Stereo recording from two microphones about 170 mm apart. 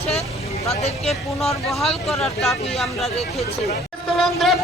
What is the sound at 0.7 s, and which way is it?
Speech, 35° left (ahead or behind).